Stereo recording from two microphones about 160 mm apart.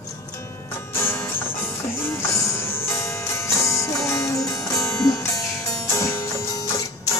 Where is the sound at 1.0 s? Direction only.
15° left (ahead or behind).